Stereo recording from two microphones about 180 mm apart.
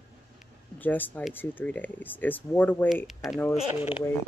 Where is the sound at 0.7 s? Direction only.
10° left (ahead or behind).